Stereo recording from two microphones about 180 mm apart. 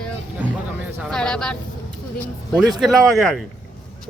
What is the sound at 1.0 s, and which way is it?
Speech, 5° left (ahead or behind).